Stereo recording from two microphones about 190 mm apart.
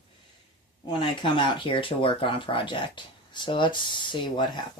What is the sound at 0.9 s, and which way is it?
Speech, 25° left (ahead or behind).